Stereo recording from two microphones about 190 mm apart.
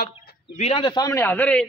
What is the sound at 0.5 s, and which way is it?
A man's voice, 35° left (ahead or behind).